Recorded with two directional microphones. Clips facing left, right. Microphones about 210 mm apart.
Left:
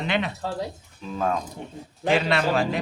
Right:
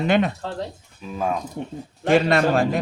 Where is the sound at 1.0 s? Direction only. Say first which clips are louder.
Even; 10° right (ahead or behind).